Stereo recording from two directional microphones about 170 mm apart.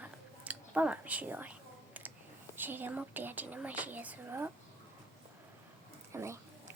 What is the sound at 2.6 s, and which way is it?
Speech, 10° right (ahead or behind).